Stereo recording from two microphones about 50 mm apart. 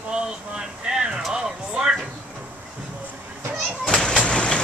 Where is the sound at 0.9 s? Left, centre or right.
Centre.